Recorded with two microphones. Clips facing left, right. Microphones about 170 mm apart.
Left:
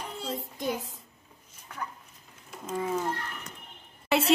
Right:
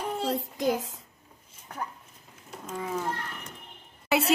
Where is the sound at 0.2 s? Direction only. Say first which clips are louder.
Right 4 dB; 75° right (ahead or behind); by 1.0 s 90° right.